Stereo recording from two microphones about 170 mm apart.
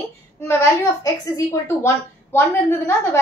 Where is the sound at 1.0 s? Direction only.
15° left (ahead or behind).